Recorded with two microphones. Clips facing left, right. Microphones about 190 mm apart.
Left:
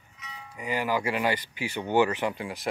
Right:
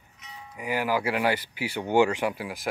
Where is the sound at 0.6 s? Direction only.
10° right (ahead or behind).